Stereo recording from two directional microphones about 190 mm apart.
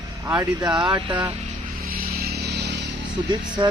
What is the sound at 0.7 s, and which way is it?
Speech, 25° right (ahead or behind).